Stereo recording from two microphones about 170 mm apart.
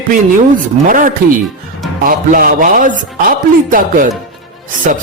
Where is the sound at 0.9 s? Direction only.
55° right (ahead or behind).